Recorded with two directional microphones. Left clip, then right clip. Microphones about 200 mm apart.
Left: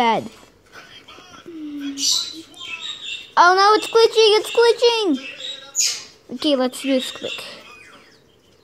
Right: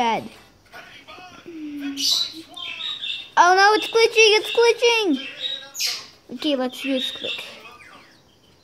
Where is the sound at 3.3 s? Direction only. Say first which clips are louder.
Left 2 dB; 10° left (ahead or behind).